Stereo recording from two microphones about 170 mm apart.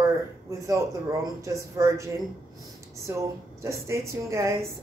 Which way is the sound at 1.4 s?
20° right (ahead or behind).